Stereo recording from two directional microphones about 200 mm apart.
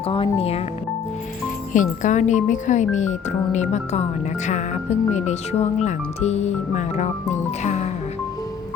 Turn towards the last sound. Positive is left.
turn(degrees=35)  # may be behind; listen again after turning